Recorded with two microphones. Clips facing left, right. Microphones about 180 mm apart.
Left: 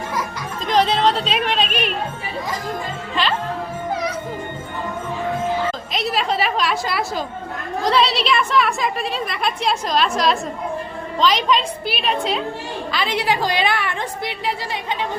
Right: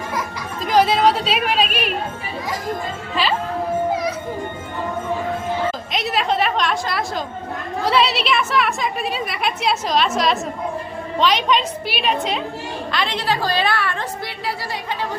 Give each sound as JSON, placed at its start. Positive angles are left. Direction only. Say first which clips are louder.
{"t": 0.6, "sound": "speech", "louder": "right 2 dB", "side_deg": -5}
{"t": 3.2, "sound": "a woman's voice", "louder": "right 1 dB", "side_deg": -5}
{"t": 5.9, "sound": "a woman's voice", "louder": "right 1 dB", "side_deg": 0}
{"t": 13.1, "sound": "a woman's voice", "louder": "left 2 dB", "side_deg": 15}